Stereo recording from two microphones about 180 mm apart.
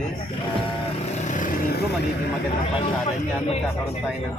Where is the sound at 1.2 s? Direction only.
45° left (ahead or behind).